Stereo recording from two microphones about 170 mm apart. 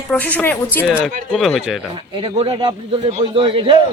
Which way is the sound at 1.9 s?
30° right (ahead or behind).